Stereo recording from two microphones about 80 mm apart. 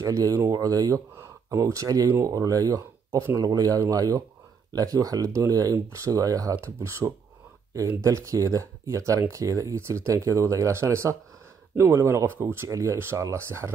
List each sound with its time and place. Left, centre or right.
0.0 s speech: right
6.6 s speech: right